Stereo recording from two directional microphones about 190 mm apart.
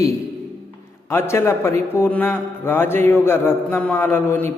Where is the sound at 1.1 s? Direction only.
15° left (ahead or behind).